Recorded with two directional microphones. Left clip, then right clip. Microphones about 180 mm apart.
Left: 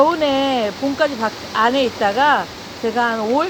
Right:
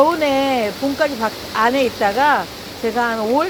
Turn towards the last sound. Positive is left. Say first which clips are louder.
# even
turn(degrees=0)  # may be behind; listen again after turning